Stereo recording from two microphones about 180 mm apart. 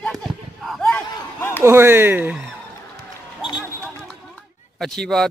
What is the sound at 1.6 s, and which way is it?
Speech, 15° right (ahead or behind).